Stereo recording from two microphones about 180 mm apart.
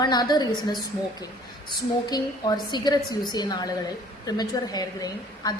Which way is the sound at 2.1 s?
20° left (ahead or behind).